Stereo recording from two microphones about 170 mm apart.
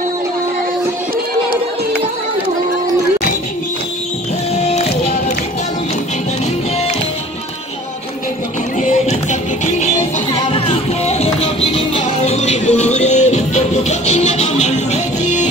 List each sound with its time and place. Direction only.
4.6 s music: 35° left (ahead or behind)
8.7 s music: 45° left (ahead or behind)